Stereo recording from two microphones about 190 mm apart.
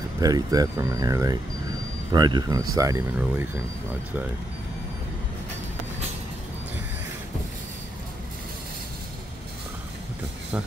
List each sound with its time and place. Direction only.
0.2 s speech: 20° right (ahead or behind)